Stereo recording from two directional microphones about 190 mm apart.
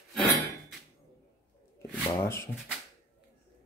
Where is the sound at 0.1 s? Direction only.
Centre (ahead or behind).